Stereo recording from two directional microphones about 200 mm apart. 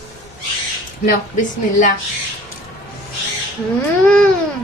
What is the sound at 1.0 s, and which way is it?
Speech, 40° left (ahead or behind).